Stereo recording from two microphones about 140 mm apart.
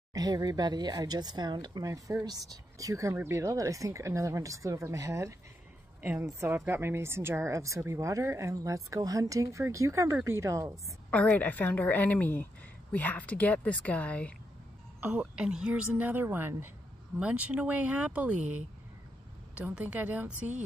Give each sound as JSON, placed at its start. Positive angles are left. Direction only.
{"t": 0.1, "sound": "speech", "side_deg": -25}
{"t": 11.1, "sound": "a woman's voice", "side_deg": 10}
{"t": 15.0, "sound": "a woman's voice", "side_deg": -10}